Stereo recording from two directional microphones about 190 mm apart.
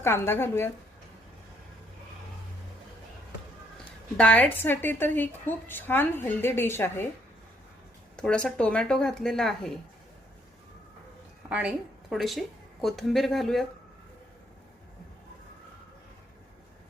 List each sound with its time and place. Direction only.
0.0 s a woman's voice: 10° left (ahead or behind)
4.2 s a woman's voice: 5° left (ahead or behind)
8.1 s speech: 5° left (ahead or behind)
11.4 s a woman's voice: 5° right (ahead or behind)